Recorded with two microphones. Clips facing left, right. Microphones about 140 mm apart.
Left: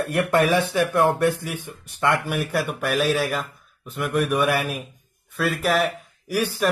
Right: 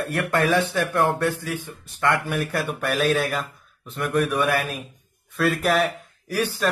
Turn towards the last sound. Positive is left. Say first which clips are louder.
# left 1 dB
turn(degrees=10)  # may be behind; listen again after turning